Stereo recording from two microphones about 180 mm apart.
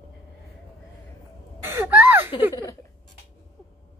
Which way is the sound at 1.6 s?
10° right (ahead or behind).